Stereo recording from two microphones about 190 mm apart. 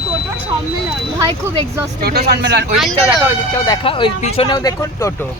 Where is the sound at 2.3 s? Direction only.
65° right (ahead or behind).